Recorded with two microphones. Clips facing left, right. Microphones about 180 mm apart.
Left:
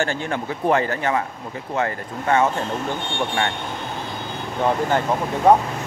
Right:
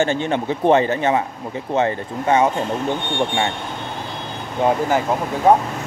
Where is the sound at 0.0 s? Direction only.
20° right (ahead or behind).